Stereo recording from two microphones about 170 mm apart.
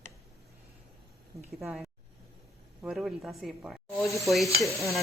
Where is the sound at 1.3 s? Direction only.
35° right (ahead or behind).